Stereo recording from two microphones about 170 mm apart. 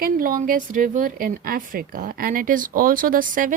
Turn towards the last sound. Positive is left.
turn(degrees=-55)  # may be behind; listen again after turning